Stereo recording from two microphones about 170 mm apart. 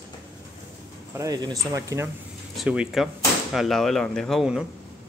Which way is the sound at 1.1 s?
20° right (ahead or behind).